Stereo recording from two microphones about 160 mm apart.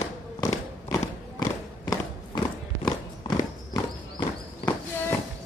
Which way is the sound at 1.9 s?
25° left (ahead or behind).